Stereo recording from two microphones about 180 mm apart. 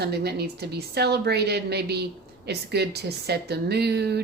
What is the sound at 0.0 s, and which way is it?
A woman's voice, 65° right (ahead or behind).